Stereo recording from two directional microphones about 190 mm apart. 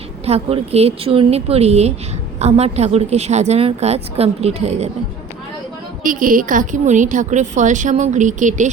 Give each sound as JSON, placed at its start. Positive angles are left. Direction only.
{"t": 0.3, "sound": "a woman's voice", "side_deg": -30}
{"t": 6.0, "sound": "a woman's voice", "side_deg": -45}